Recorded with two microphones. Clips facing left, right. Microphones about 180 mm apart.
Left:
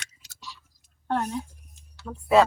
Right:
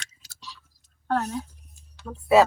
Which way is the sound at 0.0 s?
20° left (ahead or behind).